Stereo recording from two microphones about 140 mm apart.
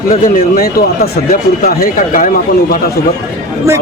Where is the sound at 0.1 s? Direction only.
90° left.